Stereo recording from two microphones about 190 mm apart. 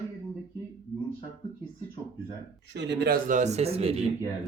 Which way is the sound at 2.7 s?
65° right (ahead or behind).